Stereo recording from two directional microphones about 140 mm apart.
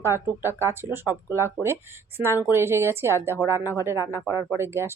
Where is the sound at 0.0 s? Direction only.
20° right (ahead or behind).